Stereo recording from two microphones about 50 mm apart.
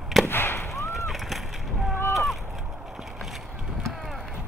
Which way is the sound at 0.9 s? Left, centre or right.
Centre.